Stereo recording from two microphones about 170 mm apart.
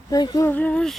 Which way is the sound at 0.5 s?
10° left (ahead or behind).